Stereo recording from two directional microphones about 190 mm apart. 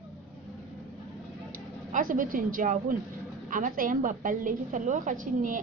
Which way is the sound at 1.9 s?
45° right (ahead or behind).